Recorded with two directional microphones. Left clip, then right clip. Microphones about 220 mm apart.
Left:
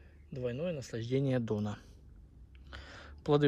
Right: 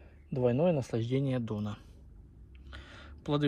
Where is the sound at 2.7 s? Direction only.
5° left (ahead or behind).